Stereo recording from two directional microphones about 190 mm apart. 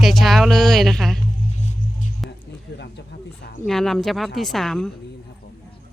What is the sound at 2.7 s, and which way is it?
Speech, 65° left (ahead or behind).